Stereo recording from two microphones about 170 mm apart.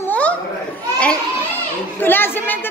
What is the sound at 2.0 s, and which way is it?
Speech, 10° left (ahead or behind).